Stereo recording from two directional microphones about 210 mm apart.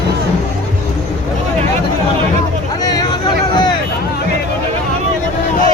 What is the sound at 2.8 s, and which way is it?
Vehicle, 20° left (ahead or behind).